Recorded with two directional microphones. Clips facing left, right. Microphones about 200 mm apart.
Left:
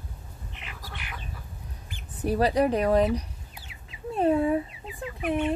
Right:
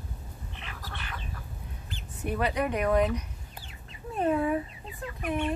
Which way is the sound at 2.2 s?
35° left (ahead or behind).